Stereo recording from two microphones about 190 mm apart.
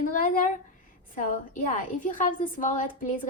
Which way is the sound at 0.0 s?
45° left (ahead or behind).